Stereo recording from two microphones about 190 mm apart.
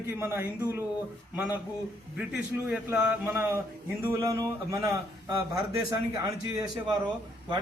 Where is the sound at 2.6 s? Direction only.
5° right (ahead or behind).